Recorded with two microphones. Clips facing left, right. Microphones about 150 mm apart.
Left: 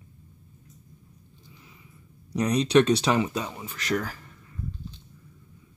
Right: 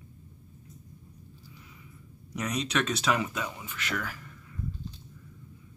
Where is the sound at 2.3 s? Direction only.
35° left (ahead or behind).